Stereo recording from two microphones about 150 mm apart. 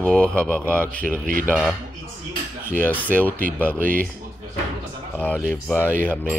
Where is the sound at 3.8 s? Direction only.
65° right (ahead or behind).